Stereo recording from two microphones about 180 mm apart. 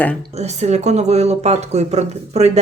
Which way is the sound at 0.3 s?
40° right (ahead or behind).